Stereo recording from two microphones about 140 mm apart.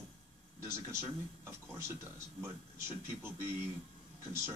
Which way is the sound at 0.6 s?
20° right (ahead or behind).